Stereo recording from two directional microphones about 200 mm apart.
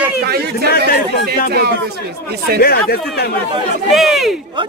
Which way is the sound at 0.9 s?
50° left (ahead or behind).